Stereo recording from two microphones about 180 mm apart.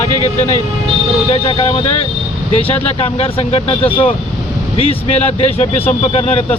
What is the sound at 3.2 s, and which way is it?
Speech, 30° left (ahead or behind).